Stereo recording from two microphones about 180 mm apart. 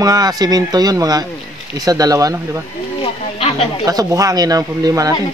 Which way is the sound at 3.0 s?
35° left (ahead or behind).